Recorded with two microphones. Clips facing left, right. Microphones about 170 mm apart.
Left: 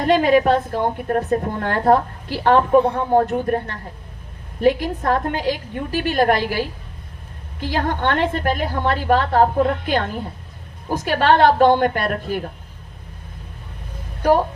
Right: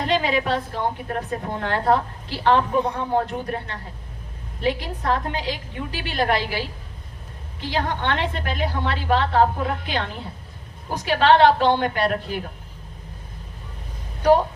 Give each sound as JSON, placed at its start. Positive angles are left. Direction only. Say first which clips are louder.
{"t": 0.0, "sound": "a woman's voice", "louder": "left 7 dB", "side_deg": 50}